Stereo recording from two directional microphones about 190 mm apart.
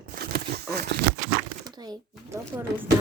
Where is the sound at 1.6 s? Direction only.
20° right (ahead or behind).